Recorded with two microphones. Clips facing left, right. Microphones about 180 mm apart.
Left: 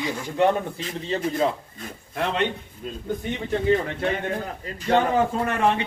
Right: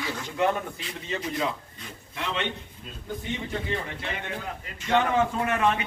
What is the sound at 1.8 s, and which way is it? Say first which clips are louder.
A man's voice: left 8 dB; 50° left (ahead or behind).